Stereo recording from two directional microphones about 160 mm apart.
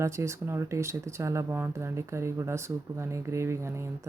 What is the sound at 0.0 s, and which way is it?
Speech, 20° right (ahead or behind).